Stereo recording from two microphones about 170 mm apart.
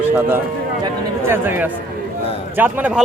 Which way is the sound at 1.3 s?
10° right (ahead or behind).